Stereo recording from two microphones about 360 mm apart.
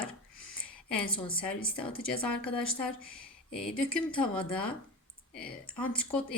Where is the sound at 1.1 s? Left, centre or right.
Centre.